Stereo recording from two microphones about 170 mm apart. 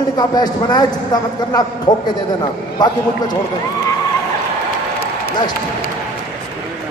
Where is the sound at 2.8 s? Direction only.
25° left (ahead or behind).